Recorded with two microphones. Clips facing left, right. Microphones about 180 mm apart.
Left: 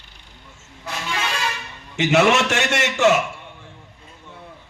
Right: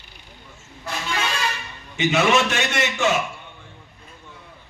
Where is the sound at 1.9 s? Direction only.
80° left.